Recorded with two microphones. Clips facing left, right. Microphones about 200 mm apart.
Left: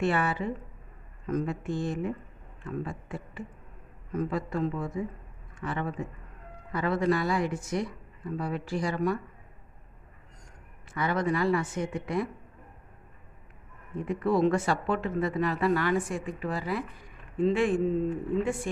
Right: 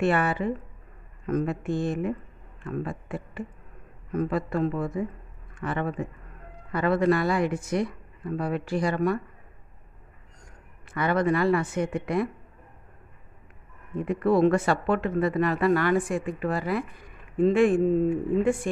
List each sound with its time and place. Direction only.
0.0 s a man's voice: 60° right (ahead or behind)
10.9 s speech: 60° right (ahead or behind)
14.0 s speech: 60° right (ahead or behind)